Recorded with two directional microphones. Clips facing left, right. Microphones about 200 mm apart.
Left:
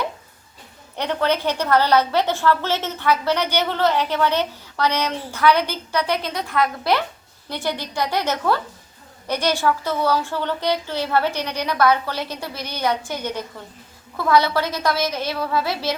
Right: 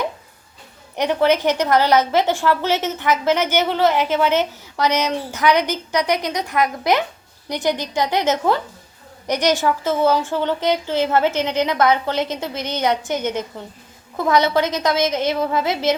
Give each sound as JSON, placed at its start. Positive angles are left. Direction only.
{"t": 0.9, "sound": "a woman's voice", "side_deg": -15}